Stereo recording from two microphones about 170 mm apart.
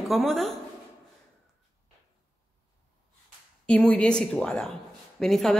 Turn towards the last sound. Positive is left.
turn(degrees=0)  # may be behind; listen again after turning